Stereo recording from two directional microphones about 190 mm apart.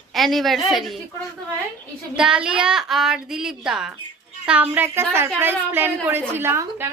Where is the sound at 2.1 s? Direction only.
5° right (ahead or behind).